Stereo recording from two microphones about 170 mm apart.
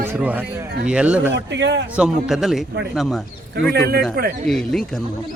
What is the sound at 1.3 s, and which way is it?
Speech, 90° right.